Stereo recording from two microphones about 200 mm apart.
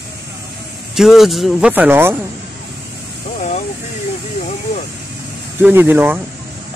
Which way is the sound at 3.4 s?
35° left (ahead or behind).